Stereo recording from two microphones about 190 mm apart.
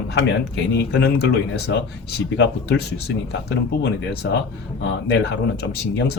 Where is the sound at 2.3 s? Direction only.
70° left (ahead or behind).